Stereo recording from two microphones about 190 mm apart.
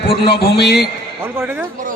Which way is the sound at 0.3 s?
60° left (ahead or behind).